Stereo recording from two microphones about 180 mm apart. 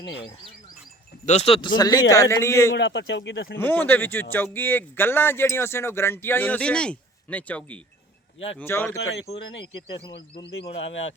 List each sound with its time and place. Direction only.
1.2 s a man's voice: 40° left (ahead or behind); by 2.7 s 15° left (ahead or behind)
2.7 s speech: 75° left (ahead or behind)
3.6 s speech: 10° left (ahead or behind)